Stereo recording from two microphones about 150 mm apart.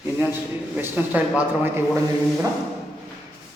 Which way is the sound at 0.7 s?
10° right (ahead or behind).